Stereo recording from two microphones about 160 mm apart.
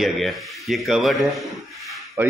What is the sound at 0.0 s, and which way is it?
A man's voice, centre (ahead or behind).